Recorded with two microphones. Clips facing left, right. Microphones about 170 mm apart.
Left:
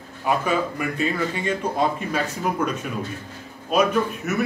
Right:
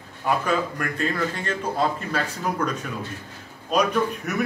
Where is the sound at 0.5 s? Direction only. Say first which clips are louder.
Left 1 dB; 10° left (ahead or behind).